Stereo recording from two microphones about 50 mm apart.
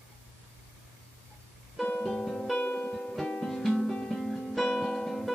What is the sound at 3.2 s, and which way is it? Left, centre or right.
Music, centre.